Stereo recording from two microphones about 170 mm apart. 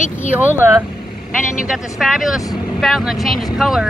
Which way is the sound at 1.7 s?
5° right (ahead or behind).